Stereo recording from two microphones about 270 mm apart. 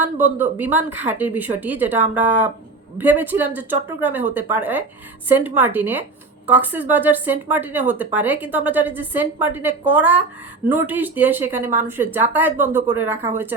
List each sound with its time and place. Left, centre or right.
0.0 s speech: centre